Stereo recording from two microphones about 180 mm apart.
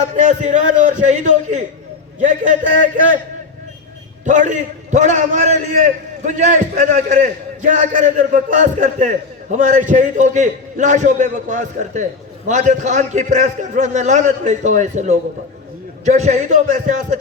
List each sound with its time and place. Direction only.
0.0 s a man's voice: 40° right (ahead or behind)
4.3 s a man's voice: 40° right (ahead or behind)